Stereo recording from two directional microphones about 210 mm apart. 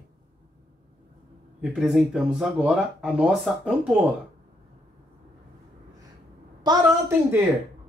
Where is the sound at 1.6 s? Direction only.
Centre (ahead or behind).